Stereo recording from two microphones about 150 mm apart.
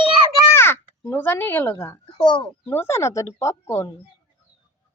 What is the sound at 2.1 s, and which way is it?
Speech, 30° left (ahead or behind).